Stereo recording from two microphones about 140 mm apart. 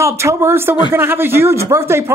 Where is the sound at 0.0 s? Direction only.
20° right (ahead or behind).